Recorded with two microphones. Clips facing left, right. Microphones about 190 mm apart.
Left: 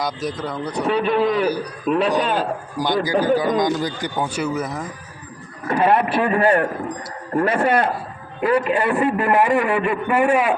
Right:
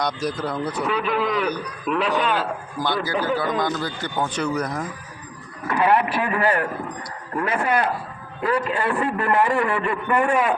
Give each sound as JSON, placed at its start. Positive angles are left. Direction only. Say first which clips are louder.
{"t": 0.0, "sound": "speech", "louder": "even", "side_deg": 0}
{"t": 0.9, "sound": "speech", "louder": "left 7 dB", "side_deg": 30}
{"t": 1.9, "sound": "a man's voice", "louder": "left 3 dB", "side_deg": 40}
{"t": 2.8, "sound": "a man's voice", "louder": "left 5 dB", "side_deg": 15}
{"t": 5.6, "sound": "a man's voice", "louder": "left 2 dB", "side_deg": 25}
{"t": 8.4, "sound": "a man's voice", "louder": "left 4 dB", "side_deg": 20}